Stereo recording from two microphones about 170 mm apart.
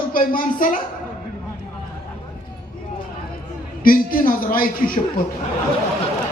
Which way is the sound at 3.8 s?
55° left (ahead or behind).